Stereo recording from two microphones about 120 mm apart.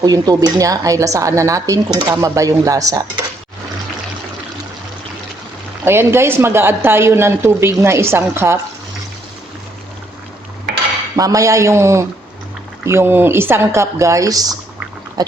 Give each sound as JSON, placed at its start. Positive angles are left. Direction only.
{"t": 0.0, "sound": "a woman's voice", "side_deg": -35}
{"t": 5.8, "sound": "a woman's voice", "side_deg": -20}
{"t": 11.2, "sound": "a woman's voice", "side_deg": -30}